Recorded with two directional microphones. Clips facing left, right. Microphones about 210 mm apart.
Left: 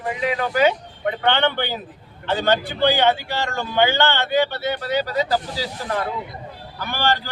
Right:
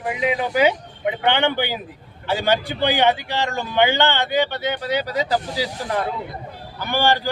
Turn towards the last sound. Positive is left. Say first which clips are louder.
# right 3 dB
turn(degrees=-15)  # may be behind; listen again after turning